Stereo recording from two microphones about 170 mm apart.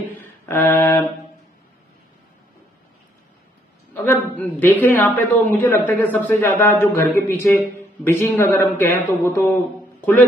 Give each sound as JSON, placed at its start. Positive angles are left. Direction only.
{"t": 0.1, "sound": "music", "side_deg": 10}
{"t": 3.9, "sound": "a sound", "side_deg": 10}
{"t": 4.4, "sound": "a man's voice", "side_deg": 10}